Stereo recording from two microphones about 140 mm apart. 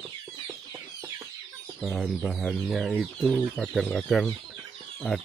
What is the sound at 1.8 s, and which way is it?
Speech, centre (ahead or behind).